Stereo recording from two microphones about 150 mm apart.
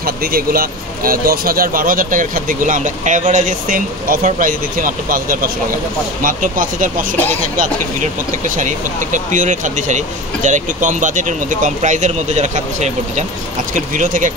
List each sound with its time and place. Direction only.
0.0 s speech: 80° right; by 14.3 s 60° right (ahead or behind)